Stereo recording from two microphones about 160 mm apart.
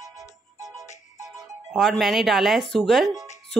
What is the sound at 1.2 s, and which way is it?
Speech, centre (ahead or behind).